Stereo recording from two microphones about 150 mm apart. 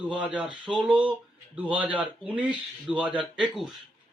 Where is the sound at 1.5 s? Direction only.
10° right (ahead or behind).